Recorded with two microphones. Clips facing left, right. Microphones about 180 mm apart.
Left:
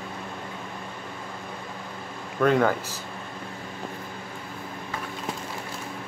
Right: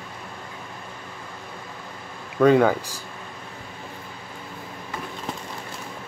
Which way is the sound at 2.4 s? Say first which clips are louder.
Right 5 dB; 10° right (ahead or behind).